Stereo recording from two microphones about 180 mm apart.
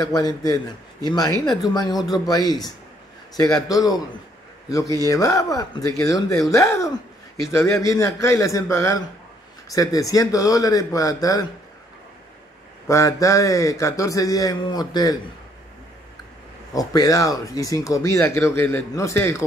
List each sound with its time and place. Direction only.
0.0 s speech: 20° left (ahead or behind)
1.4 s speech: centre (ahead or behind)
1.7 s speech: 20° left (ahead or behind)
12.8 s speech: 15° left (ahead or behind)
16.7 s speech: 20° left (ahead or behind)